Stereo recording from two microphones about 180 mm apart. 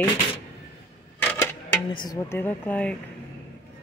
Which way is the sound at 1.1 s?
10° left (ahead or behind).